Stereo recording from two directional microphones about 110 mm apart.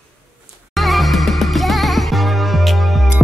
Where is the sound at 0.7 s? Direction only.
Centre (ahead or behind).